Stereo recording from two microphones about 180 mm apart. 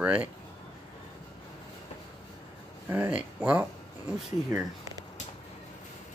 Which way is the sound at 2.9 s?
10° right (ahead or behind).